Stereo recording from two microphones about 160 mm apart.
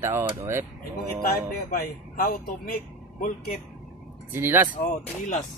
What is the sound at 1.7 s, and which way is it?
A man's voice, 60° left (ahead or behind).